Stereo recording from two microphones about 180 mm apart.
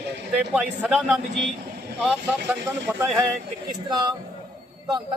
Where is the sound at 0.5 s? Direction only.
10° right (ahead or behind).